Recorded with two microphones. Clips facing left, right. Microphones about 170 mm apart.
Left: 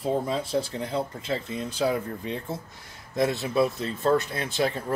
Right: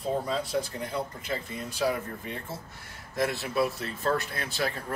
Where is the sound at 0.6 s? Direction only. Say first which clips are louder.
Left 4 dB; 25° left (ahead or behind).